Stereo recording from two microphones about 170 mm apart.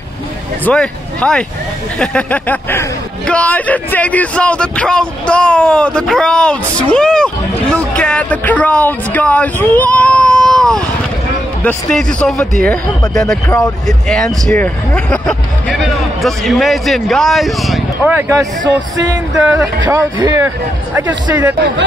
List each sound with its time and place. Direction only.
0.7 s a man's voice: 5° left (ahead or behind)
18.1 s speech: 20° right (ahead or behind)